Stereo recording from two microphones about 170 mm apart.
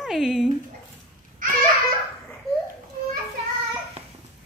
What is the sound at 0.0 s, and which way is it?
Speech, 5° right (ahead or behind).